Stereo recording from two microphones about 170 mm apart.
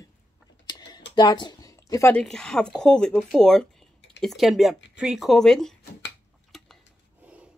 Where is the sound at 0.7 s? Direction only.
25° left (ahead or behind).